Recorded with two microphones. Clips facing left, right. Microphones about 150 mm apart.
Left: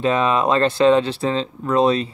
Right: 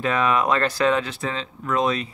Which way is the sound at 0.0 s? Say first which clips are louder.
Left 3 dB; 25° left (ahead or behind).